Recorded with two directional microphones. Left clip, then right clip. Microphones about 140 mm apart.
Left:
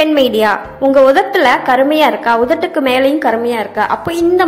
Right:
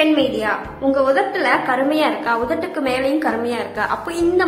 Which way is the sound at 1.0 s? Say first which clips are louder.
Left 7 dB; 45° left (ahead or behind).